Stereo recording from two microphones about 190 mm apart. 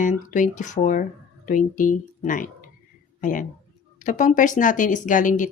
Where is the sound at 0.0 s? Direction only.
45° left (ahead or behind).